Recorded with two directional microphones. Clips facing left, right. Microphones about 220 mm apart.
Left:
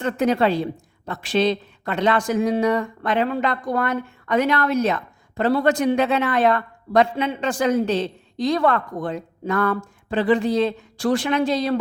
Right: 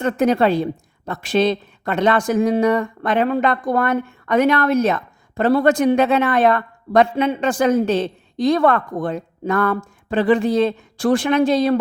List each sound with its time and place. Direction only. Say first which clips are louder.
0.0 s a woman's voice: right 3 dB; 45° right (ahead or behind)